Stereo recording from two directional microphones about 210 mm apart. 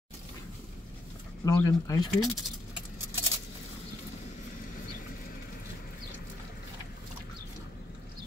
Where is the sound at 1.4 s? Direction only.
15° left (ahead or behind).